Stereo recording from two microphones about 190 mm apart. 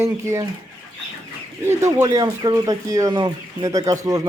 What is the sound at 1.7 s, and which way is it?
Speech, 15° right (ahead or behind).